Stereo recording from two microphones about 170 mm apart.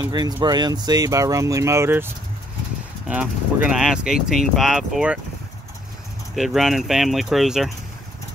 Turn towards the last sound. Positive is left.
turn(degrees=0)  # may be behind; listen again after turning